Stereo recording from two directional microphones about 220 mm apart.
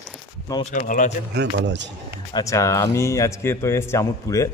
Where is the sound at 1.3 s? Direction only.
50° right (ahead or behind).